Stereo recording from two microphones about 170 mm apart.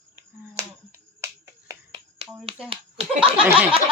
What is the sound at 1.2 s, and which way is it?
Finger snapping, 20° right (ahead or behind).